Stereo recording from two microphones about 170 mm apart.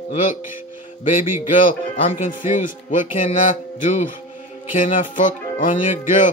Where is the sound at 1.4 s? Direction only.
50° left (ahead or behind).